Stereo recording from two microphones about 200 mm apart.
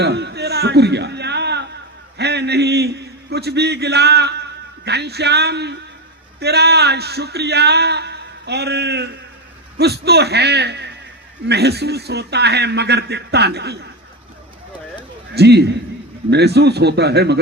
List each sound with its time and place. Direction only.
0.0 s music: 55° right (ahead or behind)
2.1 s a man's voice: 55° right (ahead or behind)
15.4 s speech: 55° right (ahead or behind)